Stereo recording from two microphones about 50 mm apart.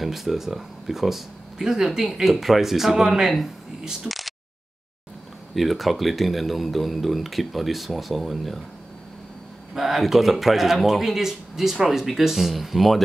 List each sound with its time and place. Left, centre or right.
0.0 s speech: centre
5.5 s speech: centre
9.8 s speech: centre